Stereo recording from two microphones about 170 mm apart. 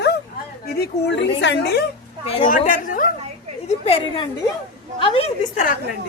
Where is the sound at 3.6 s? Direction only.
35° left (ahead or behind).